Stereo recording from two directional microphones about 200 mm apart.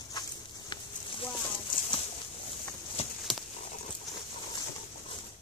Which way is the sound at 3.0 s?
30° left (ahead or behind).